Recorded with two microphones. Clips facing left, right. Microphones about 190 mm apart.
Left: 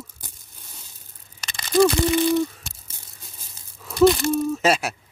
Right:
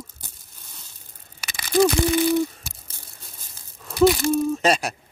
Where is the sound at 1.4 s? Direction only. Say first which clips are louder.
Left 1 dB; 5° right (ahead or behind).